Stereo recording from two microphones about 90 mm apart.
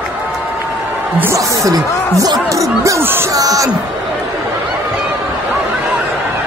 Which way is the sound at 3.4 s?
40° right (ahead or behind).